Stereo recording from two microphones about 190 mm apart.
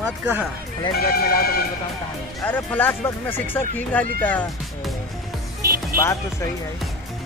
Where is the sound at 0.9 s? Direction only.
55° left (ahead or behind).